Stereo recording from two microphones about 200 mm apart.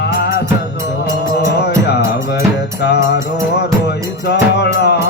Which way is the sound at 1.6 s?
55° left (ahead or behind).